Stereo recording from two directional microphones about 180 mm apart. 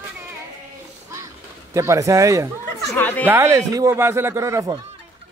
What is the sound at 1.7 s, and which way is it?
Speech, 15° right (ahead or behind).